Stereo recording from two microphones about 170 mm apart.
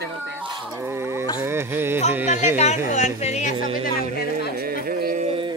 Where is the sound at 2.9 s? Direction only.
40° left (ahead or behind).